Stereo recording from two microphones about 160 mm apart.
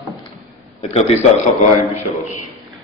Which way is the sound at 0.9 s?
45° left (ahead or behind).